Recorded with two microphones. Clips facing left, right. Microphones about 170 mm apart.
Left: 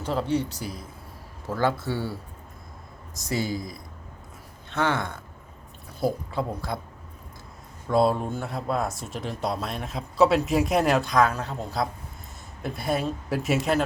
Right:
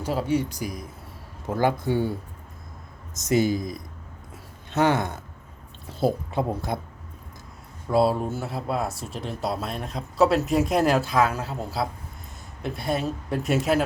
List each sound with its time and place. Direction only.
0.0 s speech: 10° right (ahead or behind)
3.2 s speech: 20° right (ahead or behind)
7.9 s speech: 5° right (ahead or behind)